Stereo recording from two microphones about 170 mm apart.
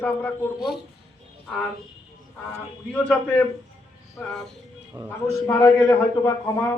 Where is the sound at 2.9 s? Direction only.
10° left (ahead or behind).